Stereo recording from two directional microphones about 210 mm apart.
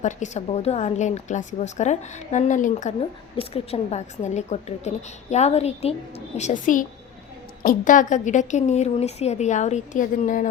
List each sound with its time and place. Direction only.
0.0 s a woman's voice: 35° left (ahead or behind)